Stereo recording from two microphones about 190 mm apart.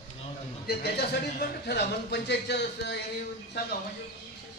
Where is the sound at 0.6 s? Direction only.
55° left (ahead or behind).